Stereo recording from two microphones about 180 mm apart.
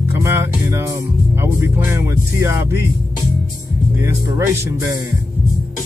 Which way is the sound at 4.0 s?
15° right (ahead or behind).